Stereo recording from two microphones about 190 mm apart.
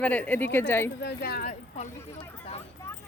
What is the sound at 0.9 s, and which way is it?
Speech, 60° left (ahead or behind).